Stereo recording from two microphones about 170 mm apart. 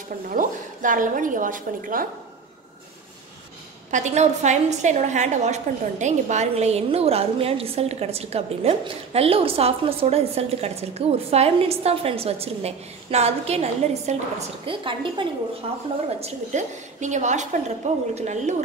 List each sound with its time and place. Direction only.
0.3 s a woman's voice: 50° right (ahead or behind)
3.9 s a woman's voice: 45° right (ahead or behind)